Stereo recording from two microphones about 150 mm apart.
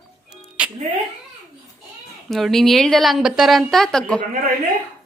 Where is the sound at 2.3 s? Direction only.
Centre (ahead or behind).